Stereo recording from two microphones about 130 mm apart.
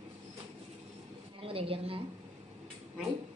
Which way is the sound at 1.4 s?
45° right (ahead or behind).